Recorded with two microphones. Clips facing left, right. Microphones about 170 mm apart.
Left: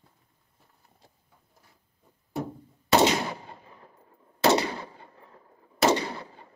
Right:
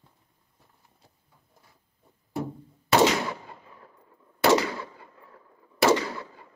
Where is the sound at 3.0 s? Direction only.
30° left (ahead or behind).